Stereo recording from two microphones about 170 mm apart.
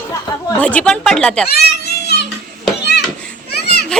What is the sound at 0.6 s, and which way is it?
Speech, 10° left (ahead or behind).